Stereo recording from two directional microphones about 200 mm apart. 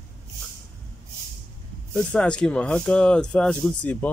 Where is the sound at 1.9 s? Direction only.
5° left (ahead or behind).